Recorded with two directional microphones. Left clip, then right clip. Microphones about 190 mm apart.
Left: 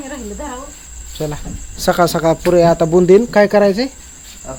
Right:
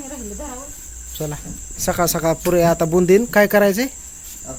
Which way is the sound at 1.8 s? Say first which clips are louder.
Left 6 dB; 10° left (ahead or behind).